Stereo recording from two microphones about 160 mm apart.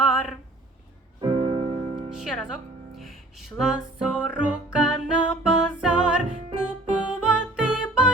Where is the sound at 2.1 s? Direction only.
5° right (ahead or behind).